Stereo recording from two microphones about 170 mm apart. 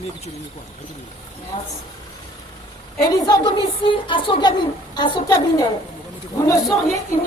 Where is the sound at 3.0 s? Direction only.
20° left (ahead or behind).